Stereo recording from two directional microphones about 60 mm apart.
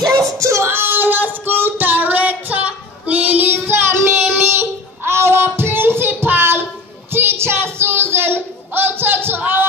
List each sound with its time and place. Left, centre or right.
0.4 s child singing: right
0.7 s child singing: right
4.2 s child singing: right
7.1 s a sound: right